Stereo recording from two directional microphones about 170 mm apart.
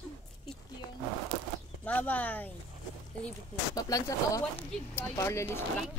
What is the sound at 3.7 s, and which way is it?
Speech, 20° left (ahead or behind).